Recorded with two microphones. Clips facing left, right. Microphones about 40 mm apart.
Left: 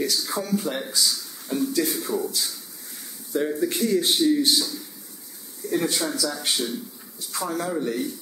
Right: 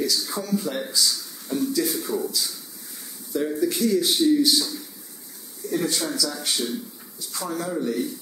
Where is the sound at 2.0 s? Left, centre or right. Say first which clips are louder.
Even; centre.